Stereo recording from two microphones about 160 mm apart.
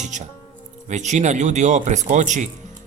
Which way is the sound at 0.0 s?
50° right (ahead or behind).